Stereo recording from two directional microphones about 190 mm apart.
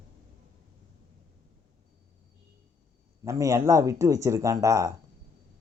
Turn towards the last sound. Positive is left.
turn(degrees=-15)  # may be behind; listen again after turning